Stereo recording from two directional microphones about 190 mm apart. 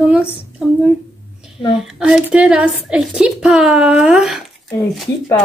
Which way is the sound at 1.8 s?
5° right (ahead or behind).